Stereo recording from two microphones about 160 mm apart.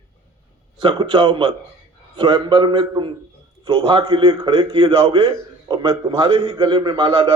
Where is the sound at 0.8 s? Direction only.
30° right (ahead or behind).